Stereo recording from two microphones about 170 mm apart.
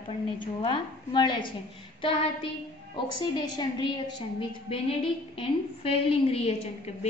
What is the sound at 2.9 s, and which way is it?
A woman's voice, 25° left (ahead or behind).